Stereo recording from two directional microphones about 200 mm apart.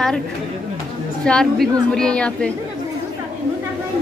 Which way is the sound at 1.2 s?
5° left (ahead or behind).